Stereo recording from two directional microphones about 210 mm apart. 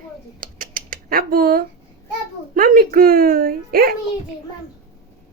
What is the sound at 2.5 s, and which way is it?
Speech, 40° right (ahead or behind).